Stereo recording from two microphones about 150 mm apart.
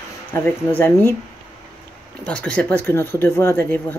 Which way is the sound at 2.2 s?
5° left (ahead or behind).